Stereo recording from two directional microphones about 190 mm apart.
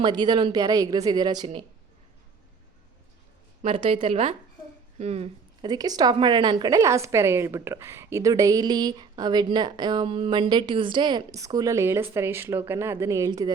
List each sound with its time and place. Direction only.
0.0 s a woman's voice: 25° right (ahead or behind)
3.6 s a woman's voice: 30° right (ahead or behind)
5.6 s a woman's voice: 20° right (ahead or behind)